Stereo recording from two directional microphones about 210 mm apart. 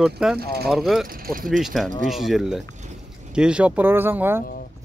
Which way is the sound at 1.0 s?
40° right (ahead or behind).